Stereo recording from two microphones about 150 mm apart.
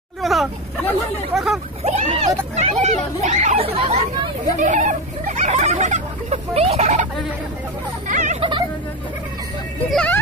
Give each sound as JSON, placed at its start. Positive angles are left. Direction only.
{"t": 0.2, "sound": "a sound", "side_deg": 0}
{"t": 1.3, "sound": "speech", "side_deg": 0}
{"t": 1.9, "sound": "speech", "side_deg": -50}
{"t": 4.6, "sound": "speech", "side_deg": -55}
{"t": 8.1, "sound": "hubbub", "side_deg": -55}
{"t": 8.4, "sound": "vehicle", "side_deg": -30}
{"t": 9.8, "sound": "a child's voice", "side_deg": 5}